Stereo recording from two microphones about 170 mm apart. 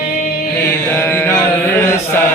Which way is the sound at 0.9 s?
15° left (ahead or behind).